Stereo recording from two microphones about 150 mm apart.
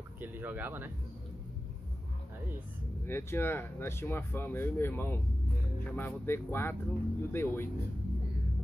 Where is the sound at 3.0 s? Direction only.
15° left (ahead or behind).